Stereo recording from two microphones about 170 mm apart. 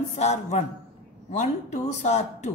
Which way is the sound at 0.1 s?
40° left (ahead or behind).